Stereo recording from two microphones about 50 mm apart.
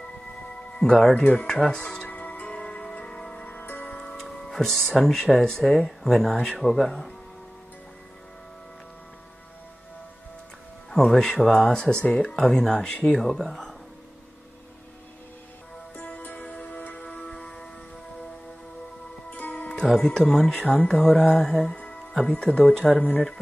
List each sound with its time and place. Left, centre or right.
0.7 s speech: centre
1.2 s speech: left
1.5 s speech: centre
2.0 s music: left
3.4 s music: left; by 4.3 s centre
4.3 s speech: centre
10.9 s speech: centre
11.6 s speech: centre
16.2 s music: left
17.0 s music: left
19.3 s music: left
20.0 s speech: left
20.2 s speech: centre